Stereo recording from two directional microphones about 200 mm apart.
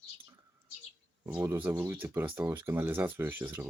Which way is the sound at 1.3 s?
10° right (ahead or behind).